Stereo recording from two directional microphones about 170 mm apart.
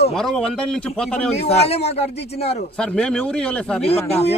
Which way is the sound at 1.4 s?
40° left (ahead or behind).